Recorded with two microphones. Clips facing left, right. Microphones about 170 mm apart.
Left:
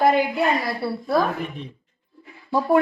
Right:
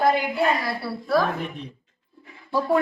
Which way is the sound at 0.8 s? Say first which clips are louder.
Left 4 dB; 55° left (ahead or behind).